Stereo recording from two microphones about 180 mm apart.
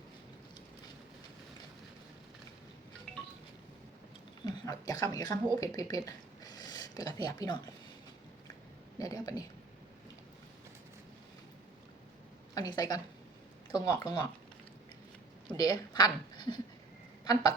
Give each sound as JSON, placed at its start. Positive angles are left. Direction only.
{"t": 3.1, "sound": "wind chime", "side_deg": 5}
{"t": 4.4, "sound": "a sound", "side_deg": 20}
{"t": 5.1, "sound": "speech", "side_deg": 20}
{"t": 9.0, "sound": "speech", "side_deg": 20}
{"t": 12.5, "sound": "speech", "side_deg": 20}
{"t": 15.5, "sound": "a woman's voice", "side_deg": 20}